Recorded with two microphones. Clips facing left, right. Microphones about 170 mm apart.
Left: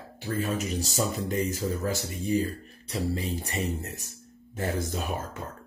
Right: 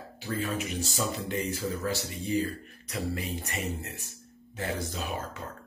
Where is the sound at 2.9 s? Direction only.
30° left (ahead or behind); by 5.0 s 50° left (ahead or behind).